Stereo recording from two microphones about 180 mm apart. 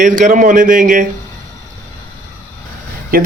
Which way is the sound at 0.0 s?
45° right (ahead or behind).